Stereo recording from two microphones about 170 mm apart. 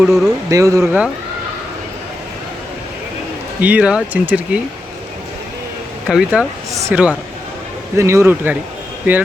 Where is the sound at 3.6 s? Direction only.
10° right (ahead or behind).